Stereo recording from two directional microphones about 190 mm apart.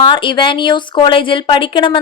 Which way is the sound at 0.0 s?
25° left (ahead or behind).